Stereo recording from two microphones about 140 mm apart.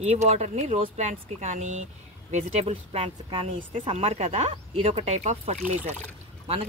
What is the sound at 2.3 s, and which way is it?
Speech, 45° right (ahead or behind).